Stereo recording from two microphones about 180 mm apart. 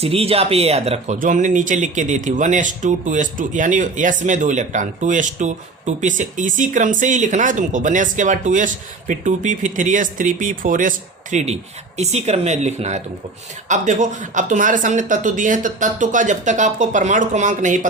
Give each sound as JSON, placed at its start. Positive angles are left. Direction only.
{"t": 0.0, "sound": "speech", "side_deg": -35}